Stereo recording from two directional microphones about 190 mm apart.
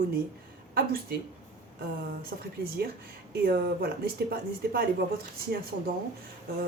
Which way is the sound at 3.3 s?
55° right (ahead or behind).